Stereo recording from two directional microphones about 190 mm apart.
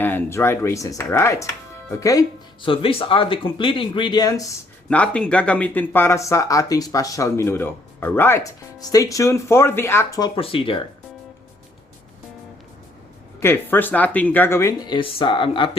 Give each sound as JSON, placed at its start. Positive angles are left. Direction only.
{"t": 0.0, "sound": "speech", "side_deg": 10}
{"t": 4.9, "sound": "speech", "side_deg": 5}
{"t": 13.4, "sound": "speech", "side_deg": 10}